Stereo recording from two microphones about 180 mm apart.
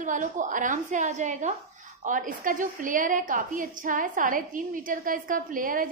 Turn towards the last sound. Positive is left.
turn(degrees=-50)  # may be behind; listen again after turning